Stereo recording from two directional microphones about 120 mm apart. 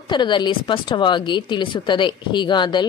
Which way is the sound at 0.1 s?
40° left (ahead or behind).